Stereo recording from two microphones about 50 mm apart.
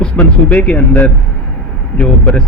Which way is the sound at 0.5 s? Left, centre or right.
Left.